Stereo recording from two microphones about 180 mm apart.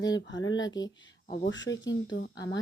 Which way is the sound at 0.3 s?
90° left.